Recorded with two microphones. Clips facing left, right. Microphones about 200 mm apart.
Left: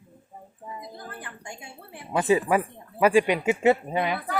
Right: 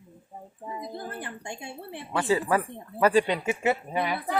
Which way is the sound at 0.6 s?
25° right (ahead or behind).